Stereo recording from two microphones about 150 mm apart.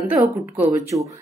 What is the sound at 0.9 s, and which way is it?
Speech, 25° right (ahead or behind).